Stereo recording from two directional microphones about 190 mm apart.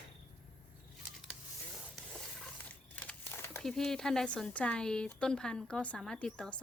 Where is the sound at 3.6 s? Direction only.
Centre (ahead or behind).